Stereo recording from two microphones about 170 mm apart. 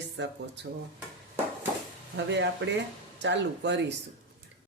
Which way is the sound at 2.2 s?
90° right.